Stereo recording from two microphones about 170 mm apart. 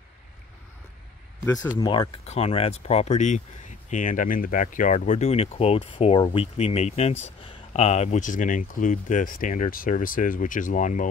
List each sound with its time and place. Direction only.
1.4 s speech: 20° left (ahead or behind); by 11.1 s 50° left (ahead or behind)